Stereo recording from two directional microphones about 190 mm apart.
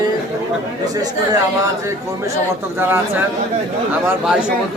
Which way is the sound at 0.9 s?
20° right (ahead or behind).